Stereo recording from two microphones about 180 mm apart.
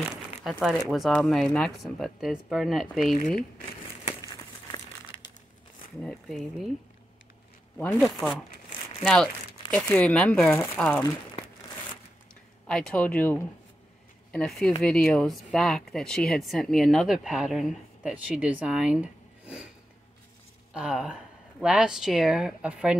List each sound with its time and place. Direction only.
0.0 s speech: centre (ahead or behind)
3.2 s speech: 45° left (ahead or behind)
6.0 s speech: centre (ahead or behind)
8.0 s speech: centre (ahead or behind)
12.6 s speech: 5° left (ahead or behind)
20.7 s speech: 5° right (ahead or behind)